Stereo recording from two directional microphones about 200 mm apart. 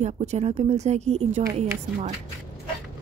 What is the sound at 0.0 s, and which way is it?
Speech, 35° right (ahead or behind).